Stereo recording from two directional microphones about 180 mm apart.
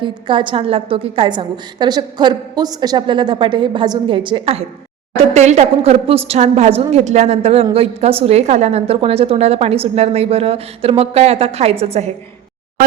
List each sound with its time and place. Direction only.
0.0 s a woman's voice: 25° right (ahead or behind)